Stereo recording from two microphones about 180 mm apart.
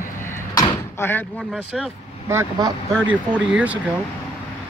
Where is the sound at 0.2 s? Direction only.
15° left (ahead or behind).